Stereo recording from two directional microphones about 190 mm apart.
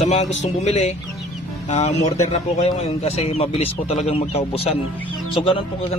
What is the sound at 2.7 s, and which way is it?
Speech, 35° left (ahead or behind).